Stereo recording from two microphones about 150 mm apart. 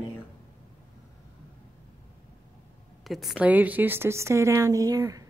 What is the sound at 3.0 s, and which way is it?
A woman's voice, centre (ahead or behind).